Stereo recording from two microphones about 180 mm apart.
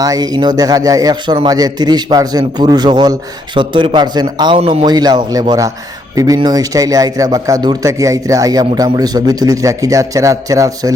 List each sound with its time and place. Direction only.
0.0 s a man's voice: 20° right (ahead or behind)